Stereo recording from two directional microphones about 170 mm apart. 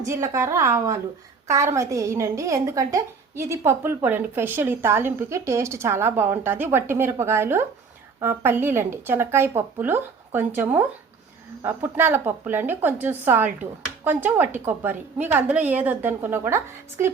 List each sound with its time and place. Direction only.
0.0 s a woman's voice: 15° right (ahead or behind)